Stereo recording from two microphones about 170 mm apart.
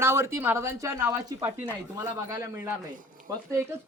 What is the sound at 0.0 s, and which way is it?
Speech, 15° right (ahead or behind).